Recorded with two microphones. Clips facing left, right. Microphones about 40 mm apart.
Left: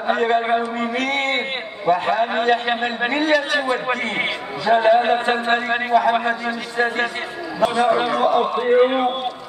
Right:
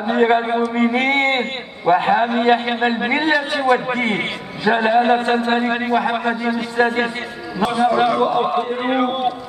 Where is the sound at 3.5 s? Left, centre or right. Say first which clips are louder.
Right 4 dB; centre.